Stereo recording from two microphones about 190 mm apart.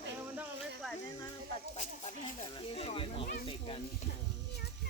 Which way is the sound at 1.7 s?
40° left (ahead or behind).